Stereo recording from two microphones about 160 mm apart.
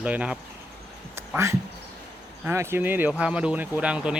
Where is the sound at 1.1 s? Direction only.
15° right (ahead or behind).